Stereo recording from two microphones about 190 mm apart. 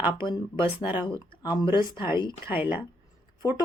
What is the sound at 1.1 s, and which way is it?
Speech, 20° left (ahead or behind).